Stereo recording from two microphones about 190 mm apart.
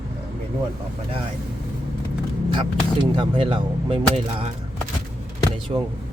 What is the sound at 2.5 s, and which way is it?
Speech, 25° right (ahead or behind).